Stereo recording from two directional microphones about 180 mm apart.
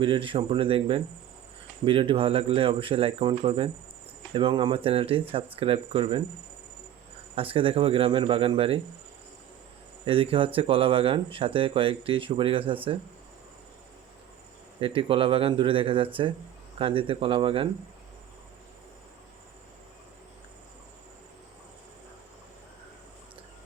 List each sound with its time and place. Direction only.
0.0 s speech: 30° right (ahead or behind)
7.3 s a man's voice: 30° right (ahead or behind)
10.1 s speech: 30° right (ahead or behind)
14.8 s speech: 30° right (ahead or behind)